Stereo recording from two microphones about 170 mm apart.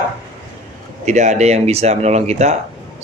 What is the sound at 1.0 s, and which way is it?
Speech, 45° right (ahead or behind).